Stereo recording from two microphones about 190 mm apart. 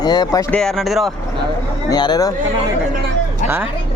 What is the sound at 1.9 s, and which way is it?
Speech, 20° left (ahead or behind).